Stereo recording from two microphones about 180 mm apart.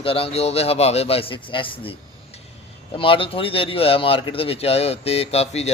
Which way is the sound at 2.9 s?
30° left (ahead or behind).